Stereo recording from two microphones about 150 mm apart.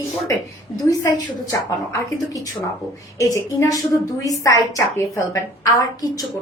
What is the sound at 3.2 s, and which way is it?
A woman's voice, 25° left (ahead or behind).